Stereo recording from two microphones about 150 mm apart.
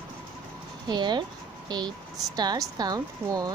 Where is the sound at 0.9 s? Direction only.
30° right (ahead or behind).